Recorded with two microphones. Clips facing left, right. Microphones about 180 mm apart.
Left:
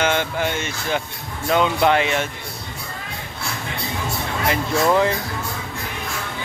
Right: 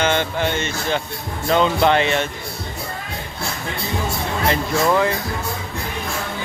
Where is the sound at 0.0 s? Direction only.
5° left (ahead or behind).